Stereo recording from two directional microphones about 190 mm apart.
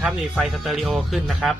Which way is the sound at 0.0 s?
Centre (ahead or behind).